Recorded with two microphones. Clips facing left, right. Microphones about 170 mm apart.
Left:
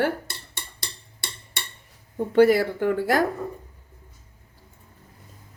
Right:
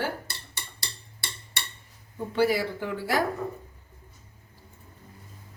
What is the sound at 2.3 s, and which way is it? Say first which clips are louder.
Speech: left 7 dB; 55° left (ahead or behind).